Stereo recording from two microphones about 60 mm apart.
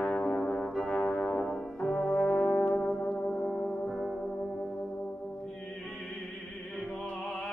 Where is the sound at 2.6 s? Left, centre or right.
Centre.